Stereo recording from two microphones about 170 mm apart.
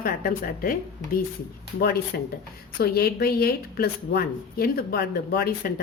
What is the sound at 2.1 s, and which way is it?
A woman's voice, 70° left (ahead or behind).